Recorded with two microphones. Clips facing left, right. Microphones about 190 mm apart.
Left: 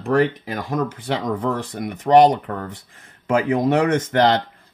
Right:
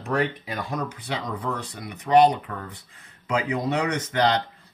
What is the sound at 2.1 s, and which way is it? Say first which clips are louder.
Speech: left 4 dB; 45° left (ahead or behind).